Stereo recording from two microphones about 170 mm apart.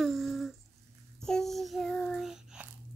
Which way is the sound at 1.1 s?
5° left (ahead or behind).